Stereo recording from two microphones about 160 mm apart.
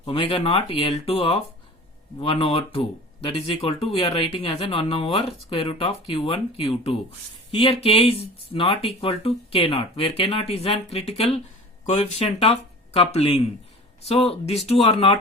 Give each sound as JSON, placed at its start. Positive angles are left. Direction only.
{"t": 0.0, "sound": "speech", "side_deg": 35}